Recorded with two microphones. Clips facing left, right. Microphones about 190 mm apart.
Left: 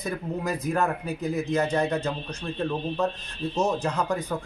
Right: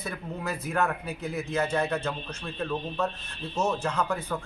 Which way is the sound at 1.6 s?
15° left (ahead or behind).